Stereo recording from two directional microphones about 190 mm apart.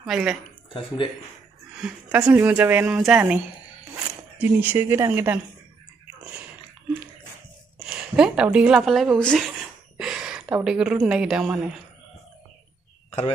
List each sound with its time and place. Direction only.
0.0 s a man's voice: 5° right (ahead or behind)
0.7 s speech: 25° left (ahead or behind)
1.8 s speech: 5° right (ahead or behind)
7.9 s a sound: 5° right (ahead or behind)
11.1 s a man's voice: 5° right (ahead or behind)